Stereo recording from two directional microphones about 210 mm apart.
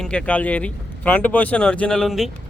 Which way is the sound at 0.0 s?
5° left (ahead or behind).